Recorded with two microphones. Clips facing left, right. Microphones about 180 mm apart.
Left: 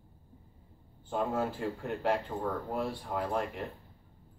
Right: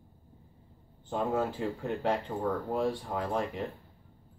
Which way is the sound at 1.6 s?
Centre (ahead or behind).